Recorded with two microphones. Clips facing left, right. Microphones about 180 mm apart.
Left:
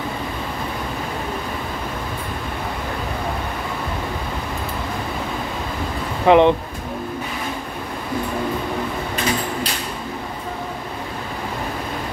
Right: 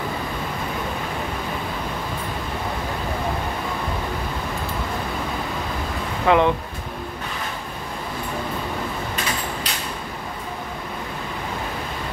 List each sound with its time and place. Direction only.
6.2 s speech: 20° left (ahead or behind)